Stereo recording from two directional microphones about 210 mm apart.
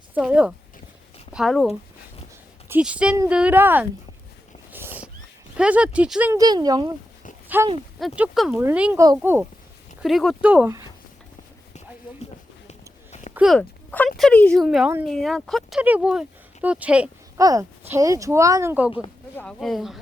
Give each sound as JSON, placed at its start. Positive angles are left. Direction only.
{"t": 0.1, "sound": "speech", "side_deg": -5}
{"t": 4.7, "sound": "a sound", "side_deg": -10}
{"t": 5.5, "sound": "speech", "side_deg": -5}
{"t": 6.3, "sound": "speech", "side_deg": -20}
{"t": 7.4, "sound": "a sound", "side_deg": -10}
{"t": 7.9, "sound": "speech", "side_deg": -5}
{"t": 10.0, "sound": "speech", "side_deg": 0}
{"t": 12.6, "sound": "a sound", "side_deg": 30}
{"t": 13.3, "sound": "speech", "side_deg": 0}